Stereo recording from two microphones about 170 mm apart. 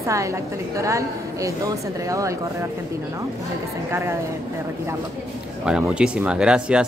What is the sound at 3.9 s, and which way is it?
Speech, 15° right (ahead or behind).